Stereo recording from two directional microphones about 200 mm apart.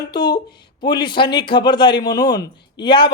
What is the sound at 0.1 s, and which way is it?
A man's voice, 20° left (ahead or behind).